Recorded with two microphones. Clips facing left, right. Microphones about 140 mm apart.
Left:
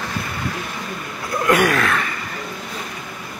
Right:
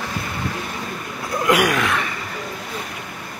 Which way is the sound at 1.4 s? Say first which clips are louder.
Left 1 dB; 15° right (ahead or behind).